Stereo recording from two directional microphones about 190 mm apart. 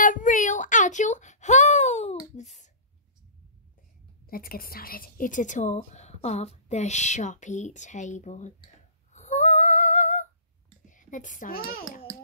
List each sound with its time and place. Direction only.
0.0 s child singing: 40° left (ahead or behind)
4.3 s a woman's voice: 50° left (ahead or behind)
9.1 s a sound: 40° left (ahead or behind)
10.9 s a child's voice: 40° left (ahead or behind)